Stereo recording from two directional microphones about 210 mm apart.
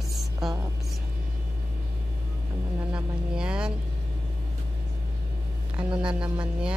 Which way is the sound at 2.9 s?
5° right (ahead or behind).